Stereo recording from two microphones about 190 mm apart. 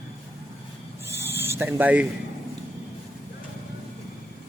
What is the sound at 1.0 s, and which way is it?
Owl, 15° right (ahead or behind).